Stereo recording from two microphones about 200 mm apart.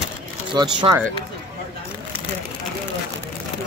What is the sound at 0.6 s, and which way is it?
Speech, 20° right (ahead or behind).